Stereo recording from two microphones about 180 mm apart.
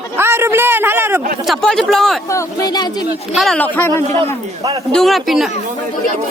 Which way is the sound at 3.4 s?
5° left (ahead or behind).